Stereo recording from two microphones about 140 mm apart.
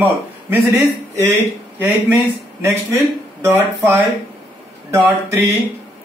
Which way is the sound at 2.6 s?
20° right (ahead or behind).